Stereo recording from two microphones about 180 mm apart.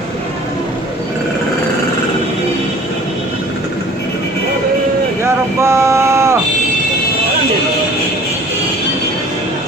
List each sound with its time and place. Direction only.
5.2 s vehicle: 15° right (ahead or behind)